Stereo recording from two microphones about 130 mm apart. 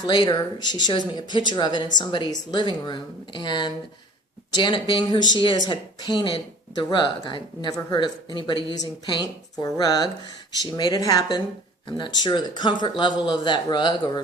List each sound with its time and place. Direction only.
0.1 s speech: 35° left (ahead or behind)